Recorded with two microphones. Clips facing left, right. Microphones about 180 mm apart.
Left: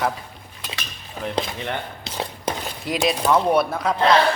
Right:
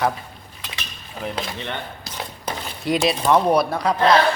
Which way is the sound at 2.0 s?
25° left (ahead or behind).